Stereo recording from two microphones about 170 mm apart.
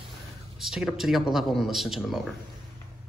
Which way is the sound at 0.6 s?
Centre (ahead or behind).